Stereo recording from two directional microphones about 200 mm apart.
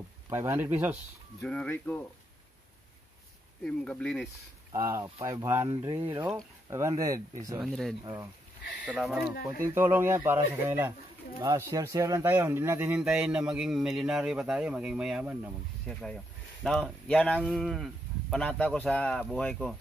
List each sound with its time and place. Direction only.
0.3 s speech: 10° right (ahead or behind)
1.4 s speech: 5° left (ahead or behind)
3.6 s speech: 5° left (ahead or behind)
4.7 s speech: 15° right (ahead or behind)
7.6 s speech: centre (ahead or behind)
8.0 s speech: 15° right (ahead or behind)
8.8 s speech: 5° right (ahead or behind)